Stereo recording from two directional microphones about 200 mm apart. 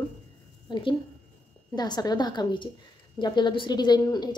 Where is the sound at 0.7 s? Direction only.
25° left (ahead or behind).